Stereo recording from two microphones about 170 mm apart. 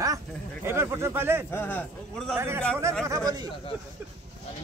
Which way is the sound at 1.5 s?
10° left (ahead or behind).